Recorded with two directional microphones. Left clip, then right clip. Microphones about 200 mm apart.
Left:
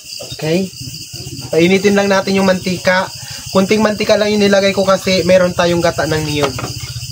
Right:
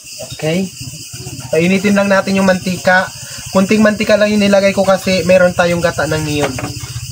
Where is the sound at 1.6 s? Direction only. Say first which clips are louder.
Left 3 dB; 25° left (ahead or behind).